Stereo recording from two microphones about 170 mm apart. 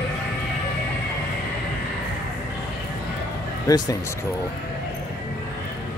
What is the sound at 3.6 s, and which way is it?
Speech, 20° left (ahead or behind).